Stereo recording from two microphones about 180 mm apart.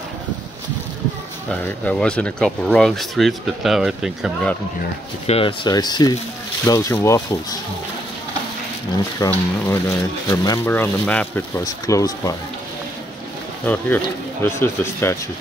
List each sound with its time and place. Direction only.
1.5 s speech: 5° left (ahead or behind)
5.2 s speech: 30° left (ahead or behind); by 7.2 s 15° left (ahead or behind)
9.3 s speech: 15° left (ahead or behind)
13.7 s speech: 10° left (ahead or behind)